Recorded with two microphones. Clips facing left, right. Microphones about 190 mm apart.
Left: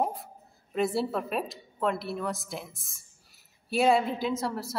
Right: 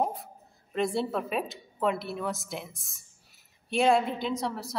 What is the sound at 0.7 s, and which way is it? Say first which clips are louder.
A woman's voice: left 1 dB; 5° left (ahead or behind).